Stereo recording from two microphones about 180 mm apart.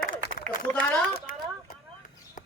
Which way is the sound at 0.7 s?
5° left (ahead or behind).